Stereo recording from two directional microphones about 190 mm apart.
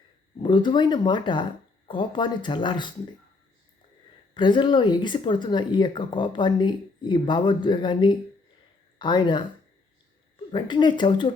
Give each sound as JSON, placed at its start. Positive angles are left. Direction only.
{"t": 0.4, "sound": "speech", "side_deg": 25}
{"t": 4.4, "sound": "speech", "side_deg": 25}
{"t": 10.5, "sound": "speech", "side_deg": 25}